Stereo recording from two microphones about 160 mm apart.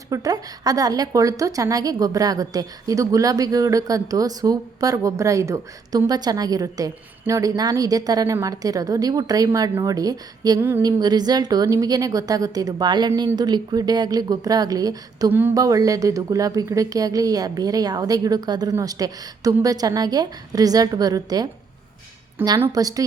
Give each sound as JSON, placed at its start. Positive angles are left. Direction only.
{"t": 0.1, "sound": "a woman's voice", "side_deg": -20}
{"t": 11.0, "sound": "a woman's voice", "side_deg": -25}
{"t": 15.3, "sound": "a woman's voice", "side_deg": -10}